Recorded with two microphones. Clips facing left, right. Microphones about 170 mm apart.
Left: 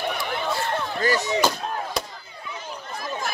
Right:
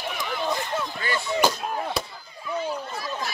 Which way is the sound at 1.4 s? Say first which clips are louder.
Even; 10° right (ahead or behind).